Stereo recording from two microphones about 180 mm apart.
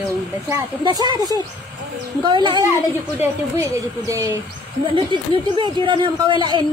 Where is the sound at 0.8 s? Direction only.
25° right (ahead or behind).